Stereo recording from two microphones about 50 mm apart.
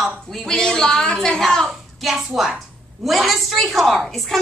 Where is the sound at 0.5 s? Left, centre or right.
Centre.